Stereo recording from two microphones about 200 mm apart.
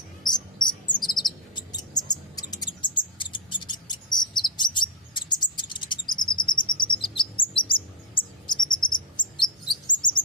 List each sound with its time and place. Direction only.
0.3 s cricket: 20° left (ahead or behind)
8.8 s chirp: 25° left (ahead or behind)